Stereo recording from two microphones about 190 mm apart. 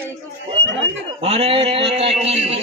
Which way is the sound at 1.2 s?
35° right (ahead or behind).